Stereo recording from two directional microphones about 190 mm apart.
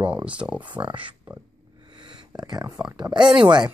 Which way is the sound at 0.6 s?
25° right (ahead or behind).